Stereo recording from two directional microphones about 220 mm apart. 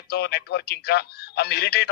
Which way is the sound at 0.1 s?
45° left (ahead or behind).